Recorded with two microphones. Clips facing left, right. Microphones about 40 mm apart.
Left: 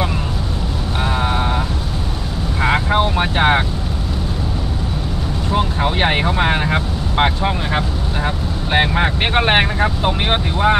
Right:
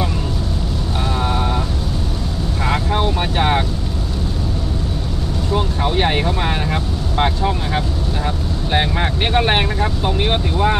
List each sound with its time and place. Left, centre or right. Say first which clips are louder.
1.0 s a sound: left 2 dB; left
2.6 s vehicle: left 3 dB; left
5.5 s vehicle: left 1 dB; left